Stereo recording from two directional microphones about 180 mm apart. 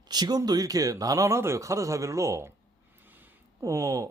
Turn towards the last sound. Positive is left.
turn(degrees=-15)  # may be behind; listen again after turning